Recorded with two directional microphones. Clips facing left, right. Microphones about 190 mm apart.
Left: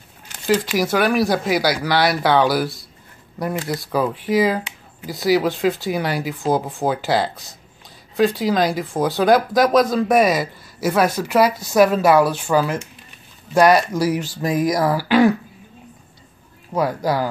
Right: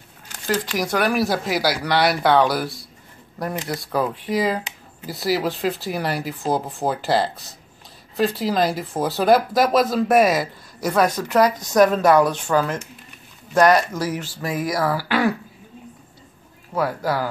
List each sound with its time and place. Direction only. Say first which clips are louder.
0.3 s speech: left 5 dB; 10° left (ahead or behind)
16.7 s speech: left 2 dB; 15° left (ahead or behind)